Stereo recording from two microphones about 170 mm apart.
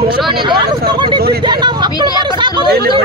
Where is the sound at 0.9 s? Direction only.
30° right (ahead or behind).